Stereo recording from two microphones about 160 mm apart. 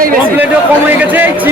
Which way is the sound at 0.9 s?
10° right (ahead or behind).